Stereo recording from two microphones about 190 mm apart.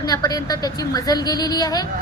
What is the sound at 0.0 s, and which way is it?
A woman's voice, 20° left (ahead or behind).